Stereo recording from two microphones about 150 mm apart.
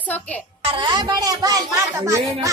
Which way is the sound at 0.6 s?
35° right (ahead or behind).